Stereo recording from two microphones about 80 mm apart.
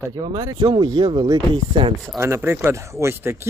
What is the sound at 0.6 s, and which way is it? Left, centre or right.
Speech, right.